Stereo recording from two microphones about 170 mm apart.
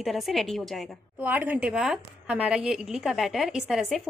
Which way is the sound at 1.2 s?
10° right (ahead or behind).